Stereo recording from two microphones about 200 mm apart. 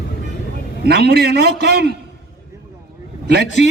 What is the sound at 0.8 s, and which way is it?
A man's voice, 55° right (ahead or behind).